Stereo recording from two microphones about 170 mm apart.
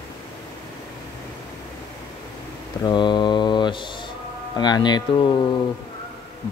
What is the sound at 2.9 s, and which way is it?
Mantra, 25° left (ahead or behind).